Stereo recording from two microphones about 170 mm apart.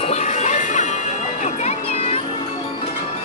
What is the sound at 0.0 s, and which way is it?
Music, 40° left (ahead or behind).